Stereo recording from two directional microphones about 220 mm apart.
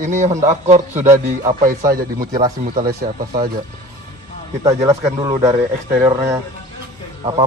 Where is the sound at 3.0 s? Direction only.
20° right (ahead or behind).